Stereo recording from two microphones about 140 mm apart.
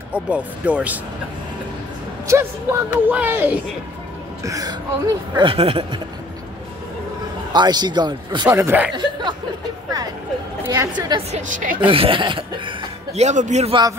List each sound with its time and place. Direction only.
0.1 s a woman's voice: 10° right (ahead or behind)
2.2 s a woman's voice: 20° right (ahead or behind)
4.4 s speech: 25° right (ahead or behind); by 5.9 s 45° right (ahead or behind)
7.5 s speech: 30° right (ahead or behind)
8.5 s a woman's voice: 15° right (ahead or behind)
10.6 s a woman's voice: 20° right (ahead or behind)
10.9 s speech: 30° right (ahead or behind)
11.3 s speech: 65° right (ahead or behind)
11.9 s speech: 40° right (ahead or behind)
13.1 s speech: 55° right (ahead or behind)